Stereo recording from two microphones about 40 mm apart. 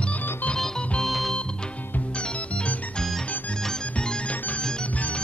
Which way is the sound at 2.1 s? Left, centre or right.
Left.